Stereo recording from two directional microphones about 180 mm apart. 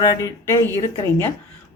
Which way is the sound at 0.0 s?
20° left (ahead or behind).